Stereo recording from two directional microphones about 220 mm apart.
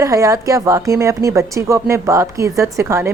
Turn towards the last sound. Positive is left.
turn(degrees=-10)  # may be behind; listen again after turning